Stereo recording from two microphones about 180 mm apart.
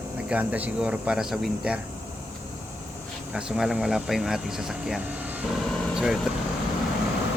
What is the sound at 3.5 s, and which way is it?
Speech, 5° right (ahead or behind).